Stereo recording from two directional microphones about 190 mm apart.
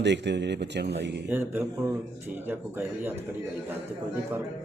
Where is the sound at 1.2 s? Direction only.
10° right (ahead or behind).